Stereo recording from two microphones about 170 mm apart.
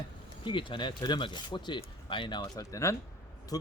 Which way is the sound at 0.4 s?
30° left (ahead or behind).